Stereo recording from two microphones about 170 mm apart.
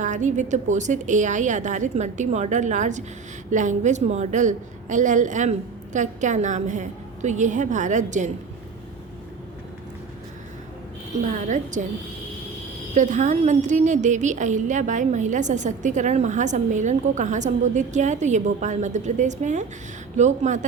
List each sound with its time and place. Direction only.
0.0 s a woman's voice: 45° right (ahead or behind)
11.2 s a woman's voice: 45° right (ahead or behind)
12.9 s a woman's voice: 45° right (ahead or behind)